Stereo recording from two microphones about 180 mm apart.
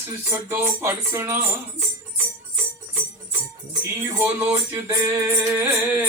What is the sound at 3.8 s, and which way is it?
Music, 15° right (ahead or behind).